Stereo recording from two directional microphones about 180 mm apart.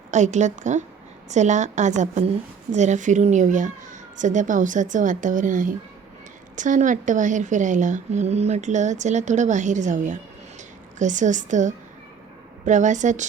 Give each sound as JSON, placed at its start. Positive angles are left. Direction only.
{"t": 0.1, "sound": "a woman's voice", "side_deg": -40}